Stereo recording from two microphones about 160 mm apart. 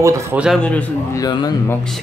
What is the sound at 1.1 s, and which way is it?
Speech, 25° left (ahead or behind).